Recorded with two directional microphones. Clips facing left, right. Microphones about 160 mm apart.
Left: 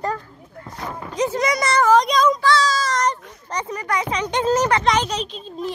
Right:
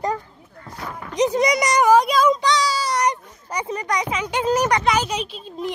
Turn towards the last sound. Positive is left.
turn(degrees=-15)  # may be behind; listen again after turning